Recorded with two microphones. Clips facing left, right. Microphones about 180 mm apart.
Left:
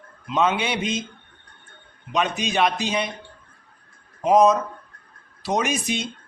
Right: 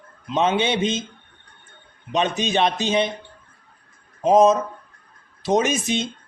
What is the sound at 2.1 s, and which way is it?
Speech, 25° right (ahead or behind).